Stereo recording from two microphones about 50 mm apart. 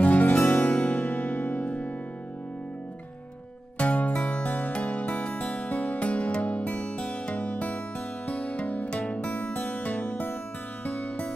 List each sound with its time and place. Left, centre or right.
0.0 s music: left
1.0 s music: left
3.7 s music: left